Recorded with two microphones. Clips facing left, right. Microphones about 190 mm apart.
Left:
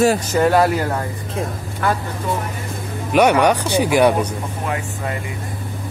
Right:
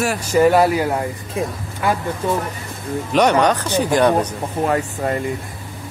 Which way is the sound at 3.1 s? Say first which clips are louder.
Left 1 dB; 10° left (ahead or behind).